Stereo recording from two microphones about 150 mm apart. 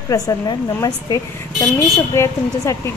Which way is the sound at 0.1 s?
20° left (ahead or behind).